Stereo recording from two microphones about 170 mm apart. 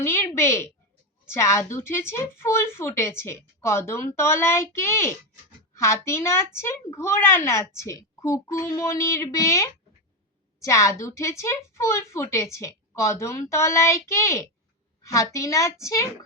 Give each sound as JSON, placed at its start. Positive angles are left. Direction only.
{"t": 0.0, "sound": "a woman's voice", "side_deg": 15}